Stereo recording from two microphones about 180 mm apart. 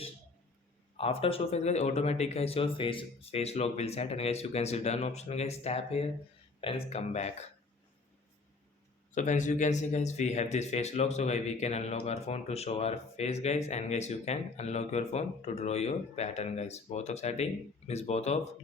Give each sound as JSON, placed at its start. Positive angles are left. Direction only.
{"t": 0.9, "sound": "speech", "side_deg": 35}
{"t": 9.1, "sound": "speech", "side_deg": 40}